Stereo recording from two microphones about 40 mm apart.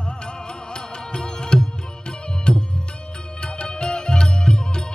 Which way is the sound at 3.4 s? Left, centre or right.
Left.